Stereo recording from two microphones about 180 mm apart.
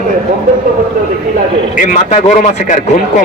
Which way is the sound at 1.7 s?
45° left (ahead or behind).